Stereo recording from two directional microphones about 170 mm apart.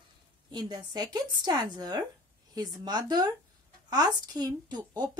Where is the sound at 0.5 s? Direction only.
25° right (ahead or behind).